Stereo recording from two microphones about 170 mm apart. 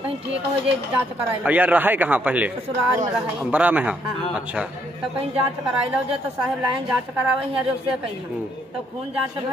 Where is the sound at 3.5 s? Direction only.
10° right (ahead or behind).